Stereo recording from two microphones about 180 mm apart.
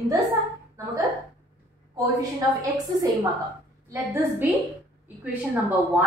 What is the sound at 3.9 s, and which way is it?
A woman's voice, 15° right (ahead or behind).